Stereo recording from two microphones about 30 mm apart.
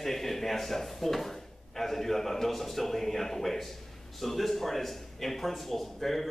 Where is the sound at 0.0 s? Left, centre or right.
Centre.